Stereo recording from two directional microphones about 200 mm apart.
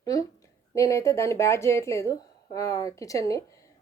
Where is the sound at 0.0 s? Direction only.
20° left (ahead or behind).